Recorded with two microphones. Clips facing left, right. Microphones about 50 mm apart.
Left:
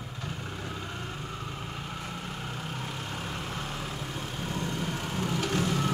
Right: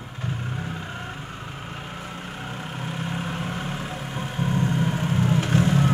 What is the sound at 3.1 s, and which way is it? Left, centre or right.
Vehicle, right.